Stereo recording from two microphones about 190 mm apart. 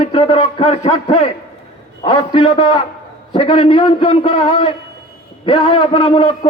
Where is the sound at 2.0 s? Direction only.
25° left (ahead or behind).